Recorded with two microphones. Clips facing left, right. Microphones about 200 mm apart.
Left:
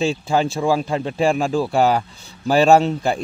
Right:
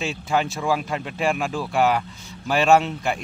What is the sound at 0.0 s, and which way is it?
Speech, 30° left (ahead or behind).